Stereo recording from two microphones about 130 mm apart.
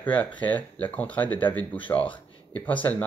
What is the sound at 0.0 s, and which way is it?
Speech, 10° left (ahead or behind).